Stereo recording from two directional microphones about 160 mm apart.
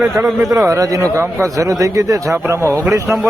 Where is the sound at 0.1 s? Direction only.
15° right (ahead or behind).